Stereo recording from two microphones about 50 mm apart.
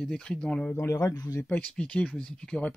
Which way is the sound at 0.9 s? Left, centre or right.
Left.